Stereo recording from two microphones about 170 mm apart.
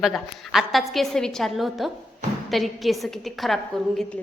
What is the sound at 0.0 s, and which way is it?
A woman's voice, centre (ahead or behind).